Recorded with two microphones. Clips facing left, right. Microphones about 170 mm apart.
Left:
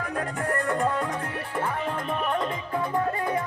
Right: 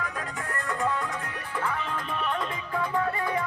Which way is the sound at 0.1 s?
50° left (ahead or behind).